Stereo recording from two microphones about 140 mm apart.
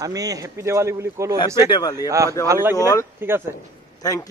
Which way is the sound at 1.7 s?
25° left (ahead or behind).